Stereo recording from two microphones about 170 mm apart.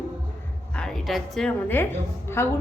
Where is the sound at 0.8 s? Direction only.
Centre (ahead or behind).